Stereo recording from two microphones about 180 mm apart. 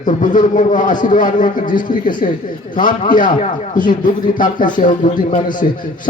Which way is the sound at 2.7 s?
50° left (ahead or behind).